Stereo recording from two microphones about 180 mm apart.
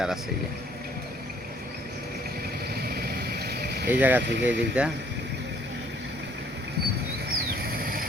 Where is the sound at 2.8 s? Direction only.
60° right (ahead or behind).